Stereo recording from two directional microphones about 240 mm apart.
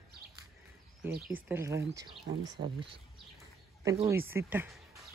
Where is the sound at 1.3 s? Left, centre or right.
Centre.